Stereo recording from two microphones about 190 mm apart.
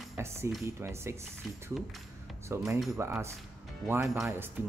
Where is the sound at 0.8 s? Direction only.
15° right (ahead or behind).